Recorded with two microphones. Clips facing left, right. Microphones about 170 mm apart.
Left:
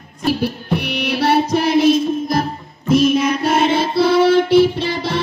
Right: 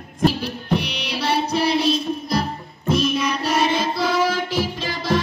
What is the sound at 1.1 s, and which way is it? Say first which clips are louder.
Child singing: left 5 dB; 45° left (ahead or behind).